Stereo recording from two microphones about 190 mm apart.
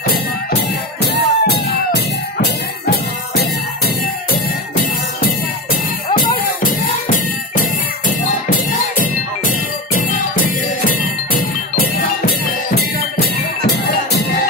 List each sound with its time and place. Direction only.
0.1 s music: 60° left (ahead or behind)
5.2 s music: 50° left (ahead or behind)
9.9 s music: 45° left (ahead or behind)